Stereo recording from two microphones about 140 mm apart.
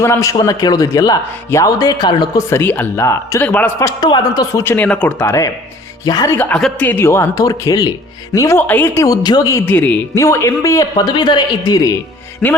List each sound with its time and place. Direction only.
0.0 s speech: 20° left (ahead or behind)
2.5 s speech: 15° left (ahead or behind)
4.6 s speech: 15° left (ahead or behind)
6.3 s speech: 15° left (ahead or behind)
9.2 s speech: 30° left (ahead or behind)